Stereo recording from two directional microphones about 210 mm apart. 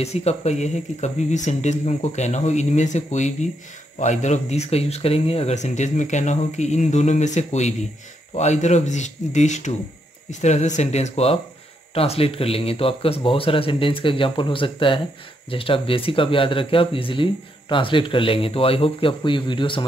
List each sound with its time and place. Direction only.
0.0 s speech: 30° left (ahead or behind)